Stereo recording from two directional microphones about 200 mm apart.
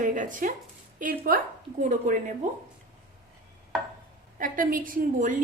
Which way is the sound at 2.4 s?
40° right (ahead or behind).